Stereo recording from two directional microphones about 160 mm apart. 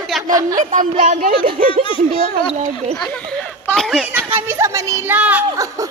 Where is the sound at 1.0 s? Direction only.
55° right (ahead or behind).